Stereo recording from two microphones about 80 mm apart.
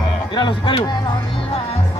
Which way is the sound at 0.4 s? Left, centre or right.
Left.